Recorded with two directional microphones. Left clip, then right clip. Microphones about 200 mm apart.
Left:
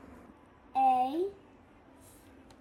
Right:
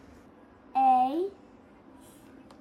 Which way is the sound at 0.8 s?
20° right (ahead or behind).